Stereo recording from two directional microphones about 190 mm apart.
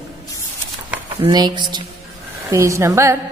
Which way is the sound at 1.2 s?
20° right (ahead or behind).